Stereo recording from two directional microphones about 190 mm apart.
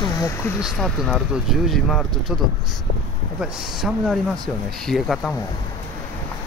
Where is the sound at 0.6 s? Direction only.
Centre (ahead or behind).